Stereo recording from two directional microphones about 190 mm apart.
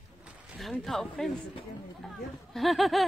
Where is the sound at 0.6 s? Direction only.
Centre (ahead or behind).